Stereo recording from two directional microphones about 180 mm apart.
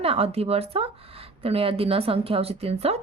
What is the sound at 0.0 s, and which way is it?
Speech, 35° right (ahead or behind).